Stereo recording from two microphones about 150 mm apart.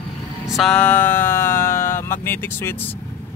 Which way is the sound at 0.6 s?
5° left (ahead or behind).